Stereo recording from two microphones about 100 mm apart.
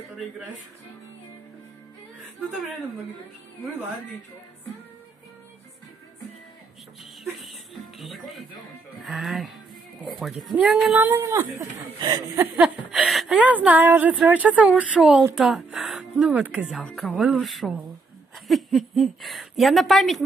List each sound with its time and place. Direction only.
7.4 s speech: centre (ahead or behind)
10.5 s a woman's voice: 15° right (ahead or behind)
12.4 s a sound: 15° right (ahead or behind)
13.3 s a woman's voice: 15° right (ahead or behind)